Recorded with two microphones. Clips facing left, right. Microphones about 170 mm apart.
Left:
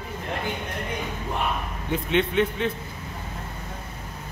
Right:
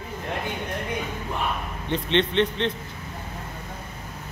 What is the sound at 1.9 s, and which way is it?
Speech, 5° left (ahead or behind).